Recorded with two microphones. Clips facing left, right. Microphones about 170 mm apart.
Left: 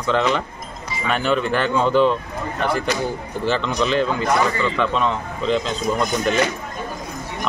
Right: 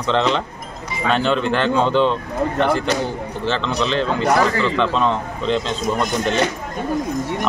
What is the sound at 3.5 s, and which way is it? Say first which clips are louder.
Speech: left 1 dB; 5° left (ahead or behind).